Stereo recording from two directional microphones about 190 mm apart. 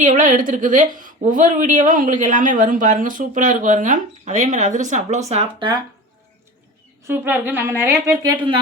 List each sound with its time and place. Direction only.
0.0 s speech: 45° right (ahead or behind)
5.3 s speech: 30° right (ahead or behind)
7.0 s a woman's voice: 10° right (ahead or behind)